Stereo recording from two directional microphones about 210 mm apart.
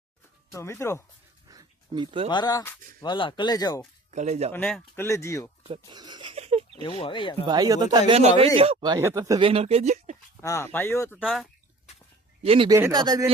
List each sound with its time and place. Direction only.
0.5 s speech: 15° left (ahead or behind)
1.5 s a sound: 20° right (ahead or behind)
2.3 s speech: 20° left (ahead or behind)
4.1 s speech: 35° right (ahead or behind)
4.5 s speech: 5° left (ahead or behind)
5.6 s a sound: 25° right (ahead or behind)
7.0 s speech: 25° left (ahead or behind)
7.4 s speech: 20° right (ahead or behind)
10.4 s speech: 15° left (ahead or behind)
11.2 s speech: centre (ahead or behind)
12.4 s speech: 25° right (ahead or behind)